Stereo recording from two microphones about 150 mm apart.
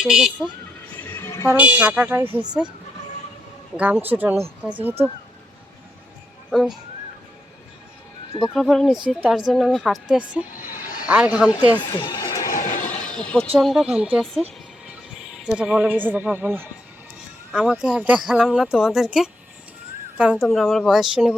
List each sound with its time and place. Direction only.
0.0 s speech: 5° right (ahead or behind)
1.1 s vehicle horn: 15° left (ahead or behind)
1.8 s speech: 10° right (ahead or behind)
3.8 s speech: 10° right (ahead or behind)
6.5 s speech: centre (ahead or behind)
8.5 s speech: centre (ahead or behind)
11.8 s speech: 30° left (ahead or behind)
12.4 s a sound: 60° left (ahead or behind)
12.9 s neigh: 5° left (ahead or behind)
13.6 s speech: centre (ahead or behind)
20.4 s speech: centre (ahead or behind)